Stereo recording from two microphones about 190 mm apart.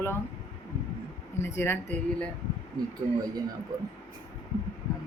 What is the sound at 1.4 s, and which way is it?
Speech, 15° left (ahead or behind).